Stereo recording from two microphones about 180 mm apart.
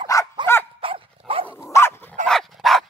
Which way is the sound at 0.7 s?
30° right (ahead or behind).